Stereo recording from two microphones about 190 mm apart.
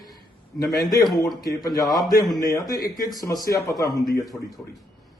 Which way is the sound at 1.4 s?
20° left (ahead or behind).